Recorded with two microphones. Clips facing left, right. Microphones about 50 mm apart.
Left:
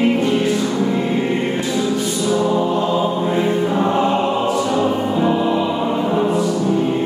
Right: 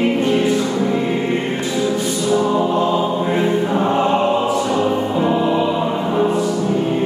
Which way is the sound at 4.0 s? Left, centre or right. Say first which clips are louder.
Right 1 dB; centre.